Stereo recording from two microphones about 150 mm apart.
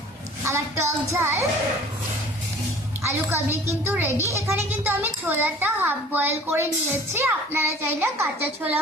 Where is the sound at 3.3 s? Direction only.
15° right (ahead or behind).